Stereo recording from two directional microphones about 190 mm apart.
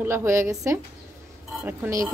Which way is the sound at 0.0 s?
15° right (ahead or behind).